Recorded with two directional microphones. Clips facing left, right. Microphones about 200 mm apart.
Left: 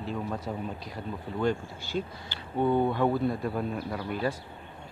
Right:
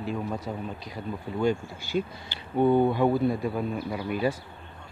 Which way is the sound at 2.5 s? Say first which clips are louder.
Right 4 dB; 10° right (ahead or behind).